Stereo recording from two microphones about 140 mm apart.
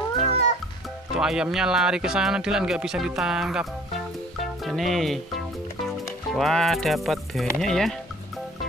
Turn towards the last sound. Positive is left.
turn(degrees=5)  # may be behind; listen again after turning